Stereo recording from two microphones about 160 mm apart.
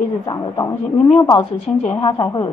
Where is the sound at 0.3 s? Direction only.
20° left (ahead or behind).